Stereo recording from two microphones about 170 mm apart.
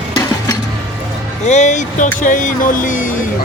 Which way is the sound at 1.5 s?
45° left (ahead or behind).